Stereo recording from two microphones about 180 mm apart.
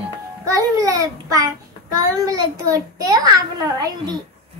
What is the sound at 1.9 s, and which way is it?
A child's voice, 20° right (ahead or behind).